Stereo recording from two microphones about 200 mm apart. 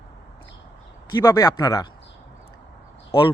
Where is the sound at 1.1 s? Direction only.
15° left (ahead or behind).